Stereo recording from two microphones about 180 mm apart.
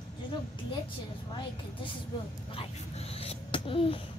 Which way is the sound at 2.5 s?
35° left (ahead or behind).